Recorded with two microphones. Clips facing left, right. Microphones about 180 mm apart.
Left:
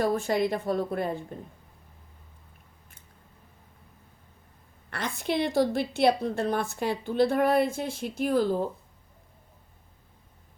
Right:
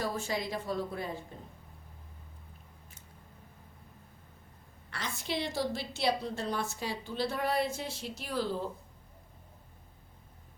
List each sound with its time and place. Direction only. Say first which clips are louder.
0.0 s a woman's voice: left 9 dB; 55° left (ahead or behind)
4.9 s a woman's voice: left 7 dB; 55° left (ahead or behind)